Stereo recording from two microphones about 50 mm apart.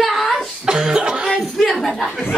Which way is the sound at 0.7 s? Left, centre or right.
Centre.